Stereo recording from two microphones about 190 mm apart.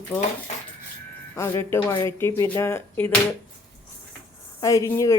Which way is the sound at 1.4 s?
15° left (ahead or behind).